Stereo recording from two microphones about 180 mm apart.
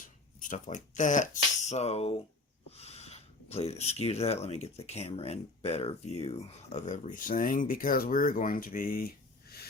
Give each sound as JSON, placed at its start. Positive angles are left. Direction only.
{"t": 0.0, "sound": "speech", "side_deg": 45}